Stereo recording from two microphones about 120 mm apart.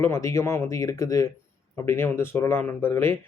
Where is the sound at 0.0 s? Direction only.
25° left (ahead or behind).